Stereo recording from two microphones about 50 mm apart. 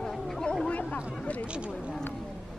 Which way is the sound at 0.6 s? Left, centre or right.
Left.